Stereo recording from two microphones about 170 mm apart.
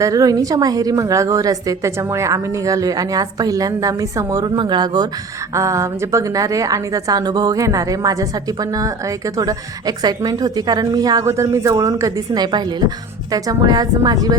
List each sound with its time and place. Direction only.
0.0 s a woman's voice: 20° right (ahead or behind)
9.4 s a woman's voice: 20° right (ahead or behind)